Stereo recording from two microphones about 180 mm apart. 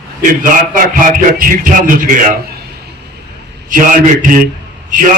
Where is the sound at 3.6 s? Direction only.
45° right (ahead or behind).